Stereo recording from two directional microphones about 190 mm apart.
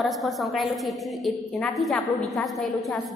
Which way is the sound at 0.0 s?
Centre (ahead or behind).